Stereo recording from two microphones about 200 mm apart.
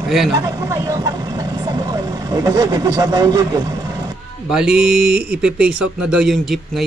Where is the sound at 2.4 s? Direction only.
20° right (ahead or behind).